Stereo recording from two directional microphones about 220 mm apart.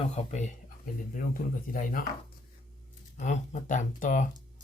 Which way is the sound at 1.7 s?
40° left (ahead or behind).